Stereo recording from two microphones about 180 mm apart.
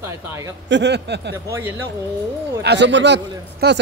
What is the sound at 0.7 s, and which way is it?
Speech, 70° right (ahead or behind).